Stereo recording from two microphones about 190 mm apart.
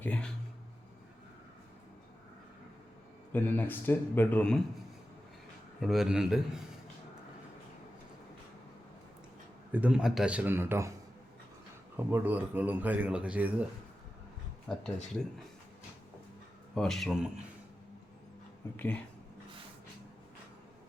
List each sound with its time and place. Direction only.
0.0 s speech: 5° left (ahead or behind)
3.3 s speech: 10° left (ahead or behind)
5.8 s a man's voice: centre (ahead or behind)
9.7 s speech: 5° right (ahead or behind)
11.9 s speech: 10° right (ahead or behind)
14.8 s a man's voice: centre (ahead or behind)
16.7 s a man's voice: centre (ahead or behind)
18.8 s speech: 10° left (ahead or behind)